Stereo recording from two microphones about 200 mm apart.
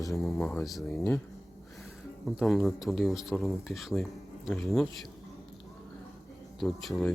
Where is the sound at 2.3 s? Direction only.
Centre (ahead or behind).